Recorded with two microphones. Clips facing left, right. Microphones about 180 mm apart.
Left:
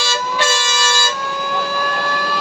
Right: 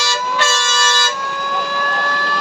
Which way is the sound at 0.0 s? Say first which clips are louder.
Even; 15° left (ahead or behind).